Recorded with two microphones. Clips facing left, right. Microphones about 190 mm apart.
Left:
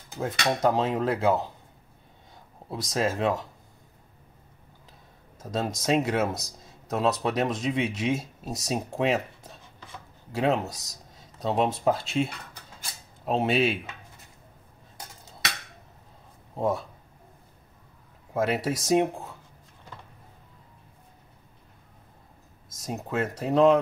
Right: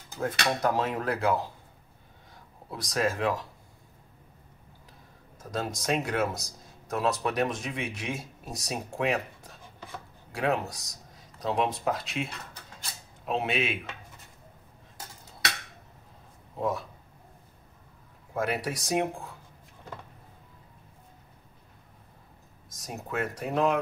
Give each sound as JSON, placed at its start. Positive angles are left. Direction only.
{"t": 0.2, "sound": "speech", "side_deg": 20}
{"t": 2.7, "sound": "speech", "side_deg": 25}
{"t": 5.4, "sound": "speech", "side_deg": 25}
{"t": 16.5, "sound": "a man's voice", "side_deg": 30}
{"t": 18.3, "sound": "speech", "side_deg": 25}
{"t": 22.8, "sound": "speech", "side_deg": 25}